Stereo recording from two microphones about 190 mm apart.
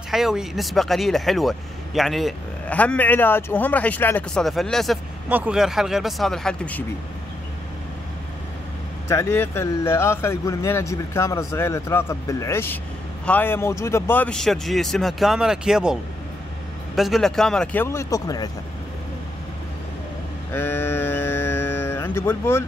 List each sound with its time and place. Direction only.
0.1 s speech: centre (ahead or behind)
9.1 s speech: 15° left (ahead or behind)
20.5 s a sound: 10° left (ahead or behind)